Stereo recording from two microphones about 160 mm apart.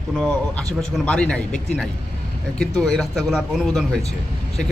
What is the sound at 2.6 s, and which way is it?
Speech, 5° left (ahead or behind).